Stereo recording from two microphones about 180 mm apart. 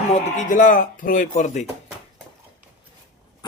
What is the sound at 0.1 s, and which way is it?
Speech, 40° left (ahead or behind).